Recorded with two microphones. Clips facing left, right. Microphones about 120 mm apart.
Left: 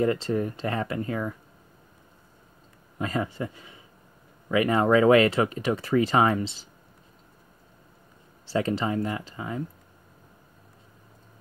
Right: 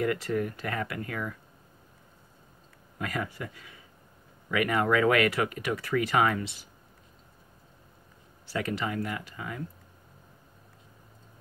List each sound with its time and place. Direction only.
0.0 s speech: 30° left (ahead or behind)
3.0 s speech: 25° left (ahead or behind)
8.5 s speech: 30° left (ahead or behind)